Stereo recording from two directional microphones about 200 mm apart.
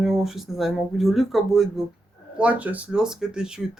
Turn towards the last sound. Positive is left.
turn(degrees=-5)  # may be behind; listen again after turning